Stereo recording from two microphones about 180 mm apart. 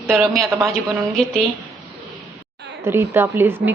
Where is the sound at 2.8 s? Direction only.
15° right (ahead or behind).